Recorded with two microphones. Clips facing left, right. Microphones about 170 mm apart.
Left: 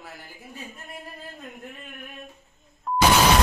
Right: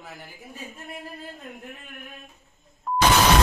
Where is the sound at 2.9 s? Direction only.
Centre (ahead or behind).